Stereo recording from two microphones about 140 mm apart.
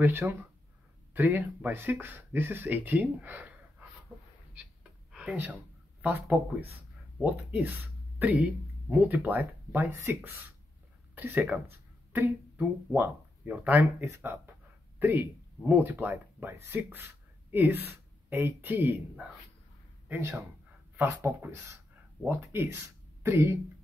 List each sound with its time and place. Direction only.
0.0 s speech: 15° right (ahead or behind)
5.1 s speech: 10° right (ahead or behind)